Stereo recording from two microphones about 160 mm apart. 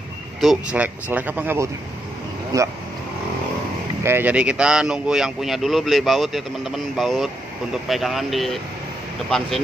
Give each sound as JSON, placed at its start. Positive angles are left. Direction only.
{"t": 0.4, "sound": "speech", "side_deg": -5}
{"t": 4.0, "sound": "speech", "side_deg": -10}